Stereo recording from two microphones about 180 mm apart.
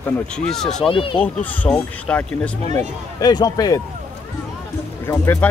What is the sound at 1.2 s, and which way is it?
Speech, 10° left (ahead or behind).